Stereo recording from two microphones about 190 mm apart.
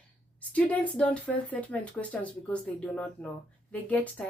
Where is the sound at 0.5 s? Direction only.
5° left (ahead or behind).